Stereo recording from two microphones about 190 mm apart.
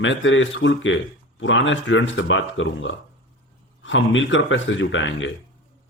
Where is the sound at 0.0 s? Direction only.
85° left.